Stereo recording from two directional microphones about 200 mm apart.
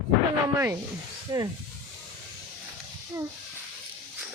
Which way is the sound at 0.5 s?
10° right (ahead or behind).